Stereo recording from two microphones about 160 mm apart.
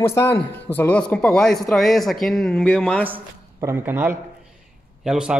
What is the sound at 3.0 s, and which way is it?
A man's voice, 15° right (ahead or behind).